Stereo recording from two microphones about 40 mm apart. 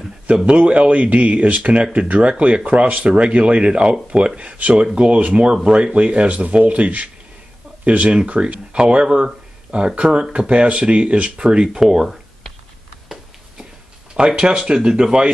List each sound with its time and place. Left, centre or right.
0.5 s speech: right
4.6 s speech: right
11.6 s speech: centre
13.1 s a sound: centre
14.1 s speech: right